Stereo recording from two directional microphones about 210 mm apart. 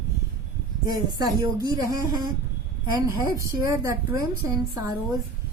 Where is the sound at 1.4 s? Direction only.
15° right (ahead or behind).